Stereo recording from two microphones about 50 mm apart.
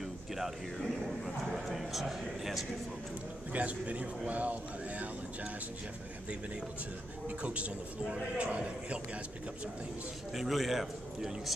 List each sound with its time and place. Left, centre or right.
0.4 s a man's voice: centre
3.5 s a man's voice: right
7.2 s a man's voice: right
10.3 s a man's voice: centre